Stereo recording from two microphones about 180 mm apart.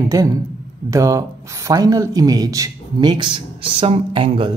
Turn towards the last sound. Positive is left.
turn(degrees=-30)  # may be behind; listen again after turning